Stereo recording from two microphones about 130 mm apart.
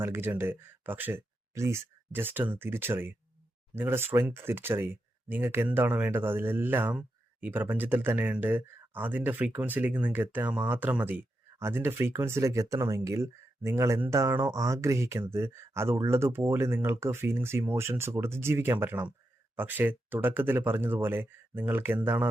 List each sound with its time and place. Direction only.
0.0 s speech: 15° right (ahead or behind)